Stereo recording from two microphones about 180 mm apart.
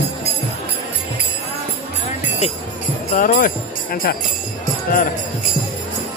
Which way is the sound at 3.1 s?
45° left (ahead or behind).